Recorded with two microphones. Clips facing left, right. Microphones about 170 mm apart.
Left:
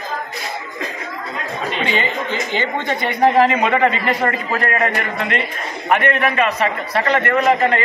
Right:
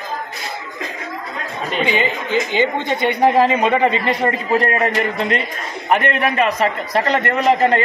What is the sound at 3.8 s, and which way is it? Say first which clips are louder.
A man's voice: even; 25° right (ahead or behind).